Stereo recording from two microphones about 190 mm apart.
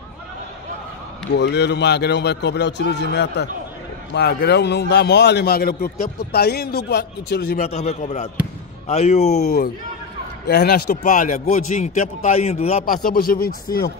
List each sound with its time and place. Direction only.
1.3 s a man's voice: 60° left (ahead or behind)
7.6 s a man's voice: 35° left (ahead or behind)
9.4 s a man's voice: 55° left (ahead or behind)
11.0 s a man's voice: 40° left (ahead or behind)
12.8 s a man's voice: 50° left (ahead or behind)